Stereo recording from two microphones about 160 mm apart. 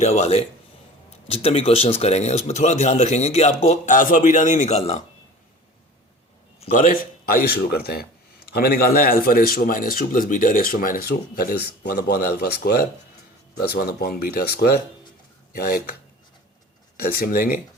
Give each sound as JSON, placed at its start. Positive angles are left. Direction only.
{"t": 0.0, "sound": "speech", "side_deg": 45}
{"t": 6.6, "sound": "speech", "side_deg": 50}
{"t": 17.2, "sound": "speech", "side_deg": 65}